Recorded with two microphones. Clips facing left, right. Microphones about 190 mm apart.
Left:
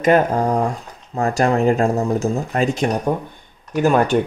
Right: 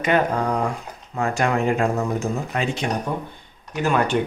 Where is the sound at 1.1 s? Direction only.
40° left (ahead or behind).